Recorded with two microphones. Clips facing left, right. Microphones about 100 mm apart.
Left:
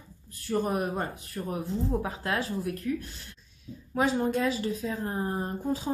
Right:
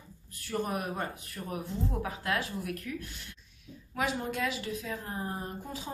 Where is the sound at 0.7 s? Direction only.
35° left (ahead or behind).